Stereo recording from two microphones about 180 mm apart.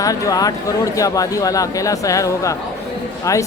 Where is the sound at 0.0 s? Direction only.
20° left (ahead or behind).